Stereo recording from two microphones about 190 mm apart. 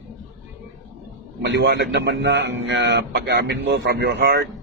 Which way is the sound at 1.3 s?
70° right (ahead or behind).